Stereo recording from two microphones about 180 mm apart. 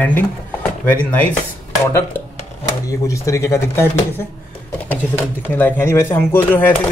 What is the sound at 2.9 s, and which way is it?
Speech, 15° left (ahead or behind).